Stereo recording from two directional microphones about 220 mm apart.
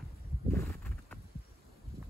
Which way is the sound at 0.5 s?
45° right (ahead or behind).